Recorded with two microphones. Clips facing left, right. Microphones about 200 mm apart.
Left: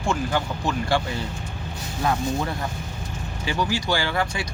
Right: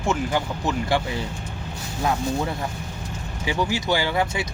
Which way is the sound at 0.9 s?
20° right (ahead or behind).